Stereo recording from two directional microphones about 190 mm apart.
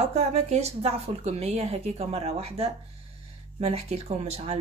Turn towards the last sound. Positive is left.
turn(degrees=-35)  # may be behind; listen again after turning